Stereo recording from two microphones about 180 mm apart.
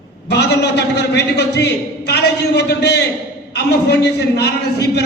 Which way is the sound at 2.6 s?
70° left (ahead or behind).